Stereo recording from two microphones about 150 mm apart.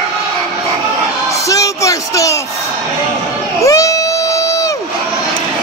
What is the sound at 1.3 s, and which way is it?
Speech, 20° left (ahead or behind).